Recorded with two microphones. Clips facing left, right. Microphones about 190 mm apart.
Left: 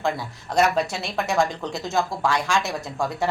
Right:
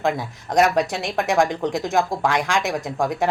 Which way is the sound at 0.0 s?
15° right (ahead or behind).